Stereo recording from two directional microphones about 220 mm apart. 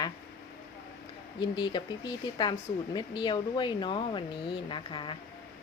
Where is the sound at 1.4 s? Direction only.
20° left (ahead or behind).